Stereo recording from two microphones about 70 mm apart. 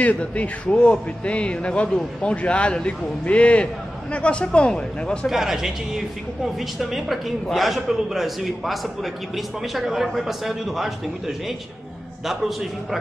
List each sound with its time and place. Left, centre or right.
0.0 s a man's voice: left
5.2 s speech: centre